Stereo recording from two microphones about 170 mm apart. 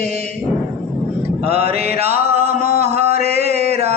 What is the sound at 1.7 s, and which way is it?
Music, 35° right (ahead or behind).